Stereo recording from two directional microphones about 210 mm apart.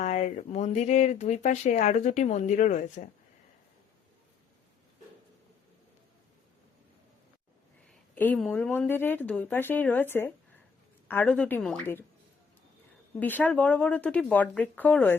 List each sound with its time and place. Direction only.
0.0 s speech: 35° left (ahead or behind)
7.9 s a woman's voice: 5° left (ahead or behind)
13.1 s a woman's voice: 10° left (ahead or behind)